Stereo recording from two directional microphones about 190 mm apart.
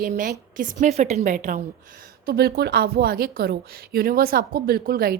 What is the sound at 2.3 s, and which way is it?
A woman's voice, 55° right (ahead or behind).